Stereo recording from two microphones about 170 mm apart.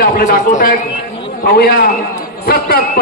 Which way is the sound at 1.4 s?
65° left (ahead or behind).